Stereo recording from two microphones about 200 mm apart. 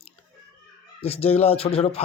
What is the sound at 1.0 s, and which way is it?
Speech, 30° left (ahead or behind).